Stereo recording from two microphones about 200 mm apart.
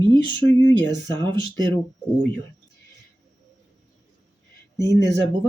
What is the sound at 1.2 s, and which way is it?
Speech, 20° right (ahead or behind).